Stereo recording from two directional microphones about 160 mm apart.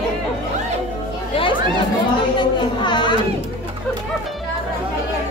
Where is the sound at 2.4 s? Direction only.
30° left (ahead or behind).